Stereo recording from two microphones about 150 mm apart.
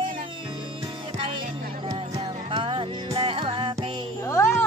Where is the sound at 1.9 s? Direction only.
35° right (ahead or behind).